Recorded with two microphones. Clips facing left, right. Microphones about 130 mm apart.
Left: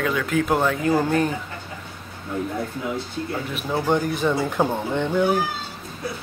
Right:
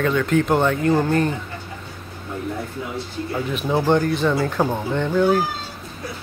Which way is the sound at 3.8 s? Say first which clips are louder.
Right 2 dB; 10° left (ahead or behind).